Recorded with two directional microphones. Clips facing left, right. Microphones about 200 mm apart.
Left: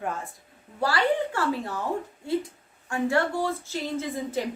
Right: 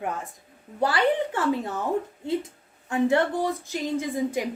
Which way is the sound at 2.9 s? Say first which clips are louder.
Right 3 dB; 20° right (ahead or behind).